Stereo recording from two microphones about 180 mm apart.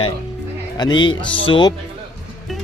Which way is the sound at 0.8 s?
25° left (ahead or behind).